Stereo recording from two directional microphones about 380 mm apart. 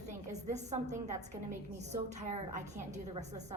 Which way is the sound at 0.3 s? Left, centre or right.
Centre.